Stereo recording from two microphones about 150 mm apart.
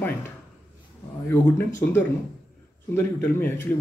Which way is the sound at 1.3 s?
15° left (ahead or behind).